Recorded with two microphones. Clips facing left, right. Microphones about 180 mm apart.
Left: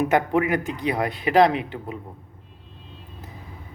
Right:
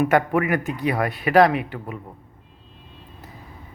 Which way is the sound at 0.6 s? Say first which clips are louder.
Right 2 dB; 5° right (ahead or behind).